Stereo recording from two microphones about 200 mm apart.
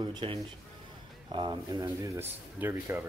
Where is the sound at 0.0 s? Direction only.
25° right (ahead or behind).